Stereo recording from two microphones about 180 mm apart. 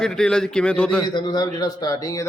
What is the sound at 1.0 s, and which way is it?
A man's voice, 25° left (ahead or behind).